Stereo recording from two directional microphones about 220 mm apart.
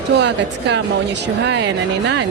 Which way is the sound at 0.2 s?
50° right (ahead or behind).